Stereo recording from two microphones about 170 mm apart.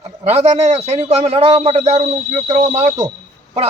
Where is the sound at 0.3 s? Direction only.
40° right (ahead or behind).